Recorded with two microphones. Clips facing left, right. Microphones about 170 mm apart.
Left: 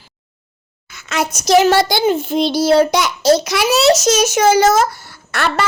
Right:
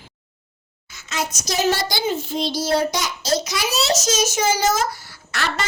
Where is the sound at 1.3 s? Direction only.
65° left (ahead or behind).